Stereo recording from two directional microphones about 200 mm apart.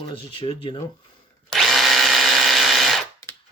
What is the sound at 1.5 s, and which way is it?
Drill, centre (ahead or behind).